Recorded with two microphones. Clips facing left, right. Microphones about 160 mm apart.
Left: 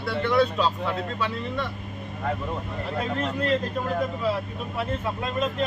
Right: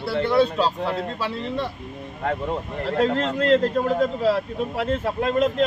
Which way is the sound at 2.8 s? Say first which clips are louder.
Right 7 dB; 75° right (ahead or behind).